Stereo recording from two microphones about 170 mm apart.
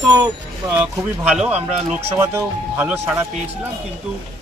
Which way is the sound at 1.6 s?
40° right (ahead or behind).